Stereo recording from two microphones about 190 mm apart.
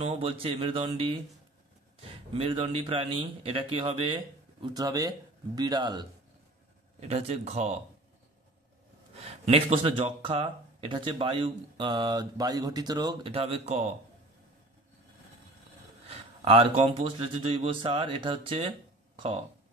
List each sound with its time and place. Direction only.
0.0 s speech: 35° right (ahead or behind)
7.0 s speech: 35° right (ahead or behind)
9.2 s speech: 30° right (ahead or behind)
16.1 s speech: 30° right (ahead or behind)